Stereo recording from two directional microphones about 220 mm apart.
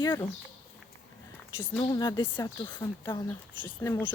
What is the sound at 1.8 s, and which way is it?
Speech, 15° left (ahead or behind).